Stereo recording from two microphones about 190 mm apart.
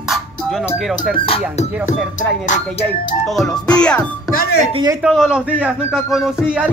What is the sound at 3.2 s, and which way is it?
Speech, centre (ahead or behind).